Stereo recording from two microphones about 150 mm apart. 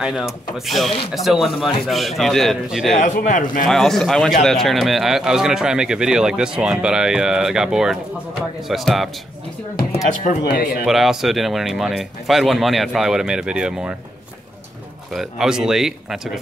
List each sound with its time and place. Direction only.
0.0 s speech: 5° right (ahead or behind)
3.0 s speech: 60° left (ahead or behind)
3.6 s speech: centre (ahead or behind)
10.2 s speech: 65° left (ahead or behind)
10.9 s speech: centre (ahead or behind)
15.1 s speech: 5° right (ahead or behind)